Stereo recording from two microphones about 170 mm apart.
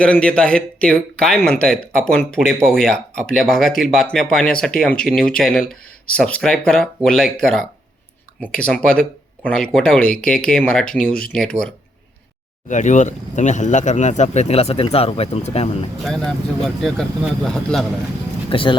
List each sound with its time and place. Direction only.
0.0 s speech: 5° left (ahead or behind)
12.6 s speech: 45° left (ahead or behind)
16.0 s speech: centre (ahead or behind)
18.5 s speech: 30° left (ahead or behind)